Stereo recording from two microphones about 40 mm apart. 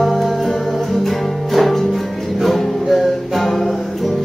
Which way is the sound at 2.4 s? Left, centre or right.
Centre.